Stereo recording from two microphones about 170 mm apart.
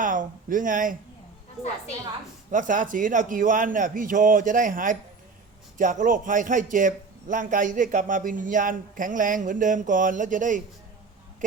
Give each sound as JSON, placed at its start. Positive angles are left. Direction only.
{"t": 0.0, "sound": "speech", "side_deg": -50}
{"t": 1.6, "sound": "a woman's voice", "side_deg": 0}
{"t": 2.5, "sound": "a man's voice", "side_deg": -50}